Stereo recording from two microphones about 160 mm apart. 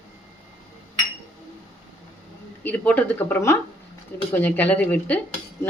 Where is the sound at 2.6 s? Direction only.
10° left (ahead or behind).